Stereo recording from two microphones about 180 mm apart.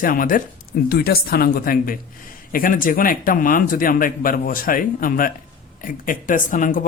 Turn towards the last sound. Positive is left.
turn(degrees=45)  # may be behind; listen again after turning